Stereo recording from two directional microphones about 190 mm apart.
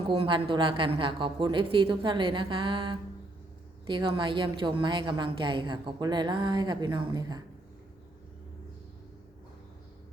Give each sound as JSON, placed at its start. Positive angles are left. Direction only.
{"t": 0.1, "sound": "a woman's voice", "side_deg": -25}